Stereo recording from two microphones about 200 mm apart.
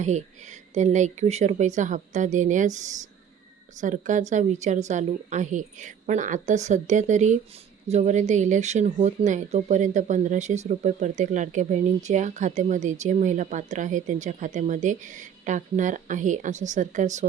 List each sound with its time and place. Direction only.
0.0 s speech: 35° right (ahead or behind)